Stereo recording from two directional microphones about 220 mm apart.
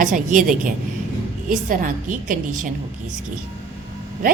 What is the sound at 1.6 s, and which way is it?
A woman's voice, 35° right (ahead or behind).